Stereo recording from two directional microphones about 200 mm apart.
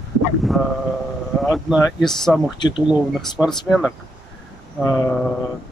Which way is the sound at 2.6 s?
20° left (ahead or behind).